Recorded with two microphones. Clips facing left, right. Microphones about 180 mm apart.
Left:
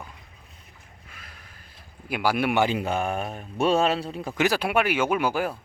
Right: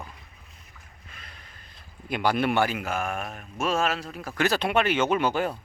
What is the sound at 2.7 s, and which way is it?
Speech, 30° left (ahead or behind).